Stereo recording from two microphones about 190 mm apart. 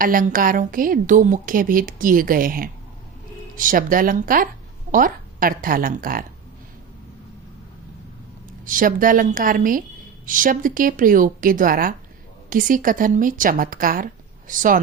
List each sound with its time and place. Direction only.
0.0 s a woman's voice: 45° right (ahead or behind)
8.6 s a woman's voice: 45° right (ahead or behind)